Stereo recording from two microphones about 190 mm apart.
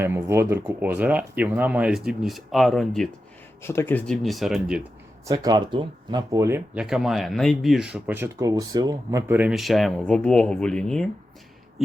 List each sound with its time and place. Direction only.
0.0 s speech: 15° right (ahead or behind)
3.6 s speech: 15° left (ahead or behind); by 4.9 s 5° right (ahead or behind)
5.2 s speech: 20° right (ahead or behind)
6.7 s speech: 5° right (ahead or behind)